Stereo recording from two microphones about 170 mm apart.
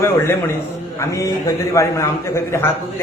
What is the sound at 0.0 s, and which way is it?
A man's voice, 15° left (ahead or behind).